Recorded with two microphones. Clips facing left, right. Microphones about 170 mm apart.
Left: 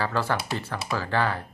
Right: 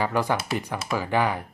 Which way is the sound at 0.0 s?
15° right (ahead or behind).